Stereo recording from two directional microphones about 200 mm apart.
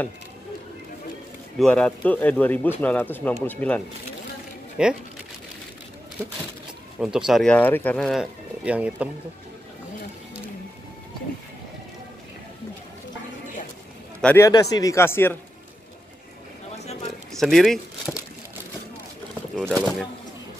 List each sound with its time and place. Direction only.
1.6 s speech: 5° left (ahead or behind)
4.8 s speech: 5° right (ahead or behind)
7.0 s speech: 5° right (ahead or behind)
14.2 s speech: 15° left (ahead or behind)
16.7 s a sound: 35° left (ahead or behind)
17.3 s a sound: centre (ahead or behind)
19.6 s speech: 10° right (ahead or behind)